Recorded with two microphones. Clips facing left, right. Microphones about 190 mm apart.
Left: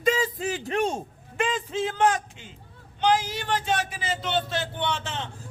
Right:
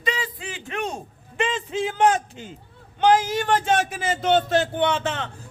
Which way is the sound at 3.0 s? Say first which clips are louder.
Right 5 dB; 50° right (ahead or behind).